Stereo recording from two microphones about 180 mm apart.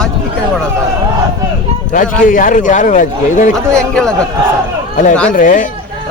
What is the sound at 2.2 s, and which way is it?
A man's voice, 45° left (ahead or behind).